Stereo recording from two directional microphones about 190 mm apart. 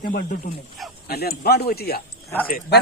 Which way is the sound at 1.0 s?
55° left (ahead or behind).